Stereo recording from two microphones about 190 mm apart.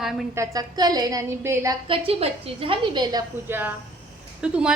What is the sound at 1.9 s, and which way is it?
A woman's voice, 30° right (ahead or behind).